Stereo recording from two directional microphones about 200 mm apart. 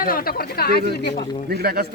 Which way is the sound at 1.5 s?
50° right (ahead or behind).